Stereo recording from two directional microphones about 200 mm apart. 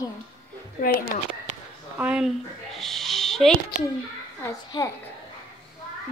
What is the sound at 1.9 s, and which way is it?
Speech, 5° right (ahead or behind).